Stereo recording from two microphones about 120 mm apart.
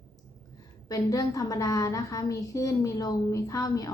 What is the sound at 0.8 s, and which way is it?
A woman's voice, 30° left (ahead or behind).